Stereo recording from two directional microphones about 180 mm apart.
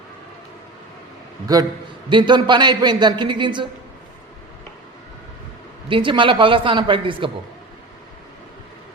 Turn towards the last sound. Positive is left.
turn(degrees=-30)  # may be behind; listen again after turning